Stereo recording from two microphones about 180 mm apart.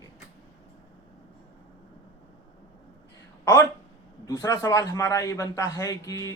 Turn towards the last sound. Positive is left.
turn(degrees=20)  # may be behind; listen again after turning